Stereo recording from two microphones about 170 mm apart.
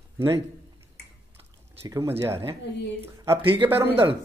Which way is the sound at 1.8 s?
15° right (ahead or behind).